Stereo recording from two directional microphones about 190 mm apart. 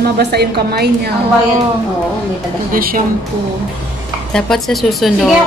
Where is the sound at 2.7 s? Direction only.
45° right (ahead or behind).